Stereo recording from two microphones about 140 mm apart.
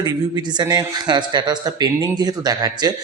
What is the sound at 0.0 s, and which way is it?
A man's voice, 30° right (ahead or behind).